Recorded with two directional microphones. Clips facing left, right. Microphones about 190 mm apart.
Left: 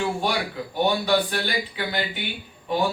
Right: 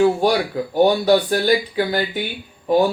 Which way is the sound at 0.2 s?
40° right (ahead or behind).